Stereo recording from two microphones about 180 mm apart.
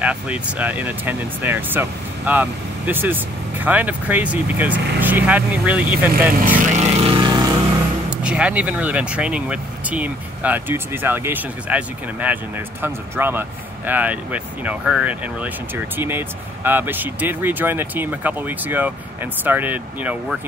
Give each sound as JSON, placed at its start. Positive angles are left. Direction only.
{"t": 0.0, "sound": "speech", "side_deg": -5}
{"t": 6.6, "sound": "vehicle", "side_deg": -40}
{"t": 8.1, "sound": "speech", "side_deg": -5}